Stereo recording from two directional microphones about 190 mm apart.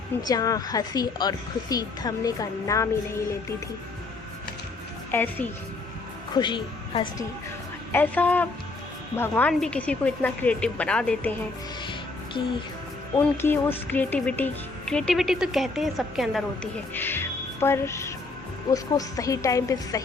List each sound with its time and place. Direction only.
0.2 s a woman's voice: 20° left (ahead or behind)
5.1 s a woman's voice: 10° left (ahead or behind)
6.3 s a woman's voice: 25° left (ahead or behind)
7.9 s a woman's voice: 10° left (ahead or behind)
13.1 s a woman's voice: 10° left (ahead or behind)
16.9 s music: 10° left (ahead or behind)
18.7 s a woman's voice: 15° left (ahead or behind)